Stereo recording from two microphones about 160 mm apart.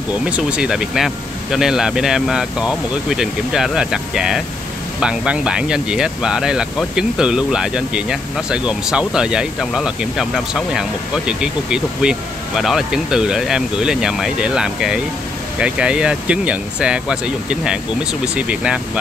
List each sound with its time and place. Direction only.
0.2 s speech: 5° right (ahead or behind)